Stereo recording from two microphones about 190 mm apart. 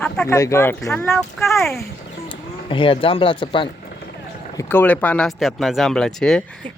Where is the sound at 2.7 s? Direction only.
30° left (ahead or behind).